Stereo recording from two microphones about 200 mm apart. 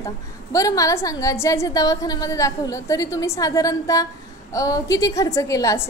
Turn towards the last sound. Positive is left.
turn(degrees=15)  # may be behind; listen again after turning